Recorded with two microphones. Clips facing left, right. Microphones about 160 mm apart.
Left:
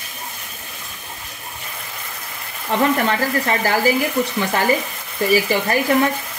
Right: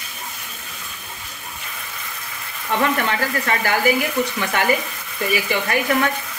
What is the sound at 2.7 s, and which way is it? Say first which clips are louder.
Speech: left 3 dB; 30° left (ahead or behind).